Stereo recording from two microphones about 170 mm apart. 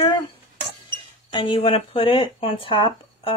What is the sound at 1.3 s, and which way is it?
Speech, 30° left (ahead or behind).